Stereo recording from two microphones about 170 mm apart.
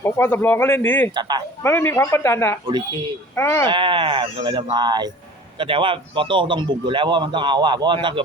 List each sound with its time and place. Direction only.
0.0 s speech: 15° left (ahead or behind)
1.1 s a man's voice: 25° right (ahead or behind)
1.6 s speech: 15° left (ahead or behind)
3.7 s a man's voice: 30° right (ahead or behind)